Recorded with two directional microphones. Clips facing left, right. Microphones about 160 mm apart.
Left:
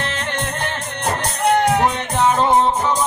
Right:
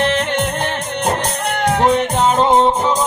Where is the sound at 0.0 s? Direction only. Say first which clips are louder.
Right 8 dB; 20° right (ahead or behind).